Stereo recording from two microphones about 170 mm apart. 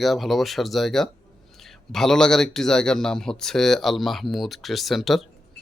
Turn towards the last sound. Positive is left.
turn(degrees=0)  # may be behind; listen again after turning